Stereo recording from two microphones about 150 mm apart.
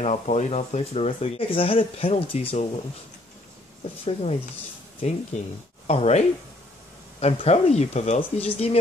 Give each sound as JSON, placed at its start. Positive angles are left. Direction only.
{"t": 0.0, "sound": "speech", "side_deg": 50}
{"t": 4.0, "sound": "speech", "side_deg": 45}